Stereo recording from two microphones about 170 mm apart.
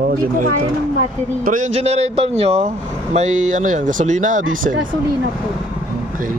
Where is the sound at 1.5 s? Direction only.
45° right (ahead or behind).